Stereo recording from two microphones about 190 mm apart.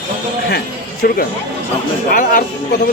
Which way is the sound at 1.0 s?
50° left (ahead or behind).